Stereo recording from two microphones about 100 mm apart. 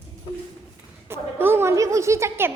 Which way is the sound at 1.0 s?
25° right (ahead or behind).